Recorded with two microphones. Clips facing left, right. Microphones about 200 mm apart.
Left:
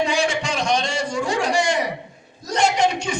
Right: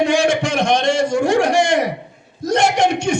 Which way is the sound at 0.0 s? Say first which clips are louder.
Right 6 dB; 55° right (ahead or behind).